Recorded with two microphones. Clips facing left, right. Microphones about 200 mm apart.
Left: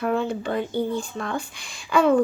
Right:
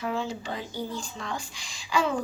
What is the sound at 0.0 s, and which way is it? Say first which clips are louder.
Speech: left 7 dB; 55° left (ahead or behind).